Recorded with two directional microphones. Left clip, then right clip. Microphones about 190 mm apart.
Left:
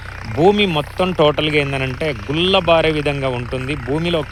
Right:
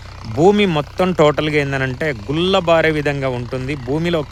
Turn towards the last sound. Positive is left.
turn(degrees=-30)  # may be behind; listen again after turning